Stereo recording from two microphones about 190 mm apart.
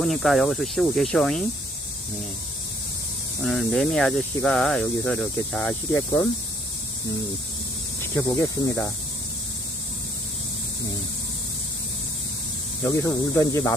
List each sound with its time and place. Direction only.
0.0 s speech: centre (ahead or behind)
3.4 s speech: centre (ahead or behind)
8.1 s speech: 10° left (ahead or behind)
12.8 s speech: 15° left (ahead or behind)